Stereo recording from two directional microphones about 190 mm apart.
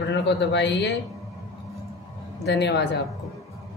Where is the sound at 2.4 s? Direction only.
65° left (ahead or behind).